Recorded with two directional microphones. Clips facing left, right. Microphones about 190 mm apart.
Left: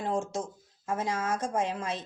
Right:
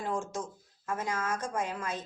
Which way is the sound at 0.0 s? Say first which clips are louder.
Left 3 dB; 25° left (ahead or behind).